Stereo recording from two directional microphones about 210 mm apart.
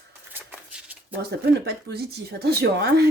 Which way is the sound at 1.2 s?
50° right (ahead or behind).